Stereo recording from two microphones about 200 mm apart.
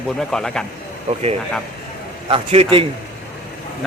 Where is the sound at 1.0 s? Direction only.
35° right (ahead or behind).